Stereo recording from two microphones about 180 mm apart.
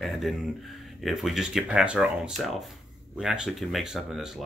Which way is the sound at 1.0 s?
Centre (ahead or behind).